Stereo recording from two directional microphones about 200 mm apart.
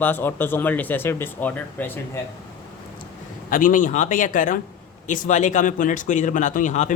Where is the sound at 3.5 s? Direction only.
40° left (ahead or behind).